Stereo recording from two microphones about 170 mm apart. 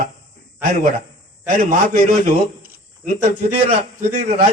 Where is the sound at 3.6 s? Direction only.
45° right (ahead or behind).